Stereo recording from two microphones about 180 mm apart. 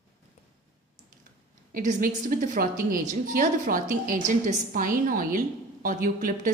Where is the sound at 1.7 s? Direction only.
45° right (ahead or behind).